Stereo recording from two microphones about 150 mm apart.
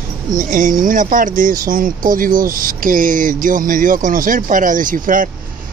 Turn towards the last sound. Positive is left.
turn(degrees=-60)  # may be behind; listen again after turning